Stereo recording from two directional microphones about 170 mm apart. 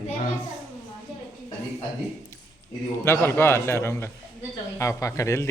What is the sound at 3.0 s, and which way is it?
A man's voice, 15° left (ahead or behind).